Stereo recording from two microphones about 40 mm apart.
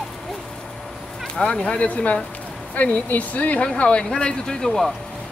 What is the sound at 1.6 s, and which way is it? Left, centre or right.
Speech, left.